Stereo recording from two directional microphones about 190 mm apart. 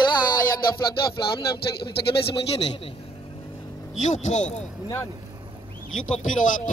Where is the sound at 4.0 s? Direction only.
40° left (ahead or behind).